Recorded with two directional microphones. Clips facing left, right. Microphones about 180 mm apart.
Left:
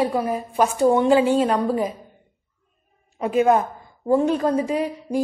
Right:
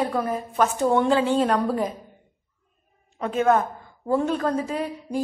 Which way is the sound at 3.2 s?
10° left (ahead or behind).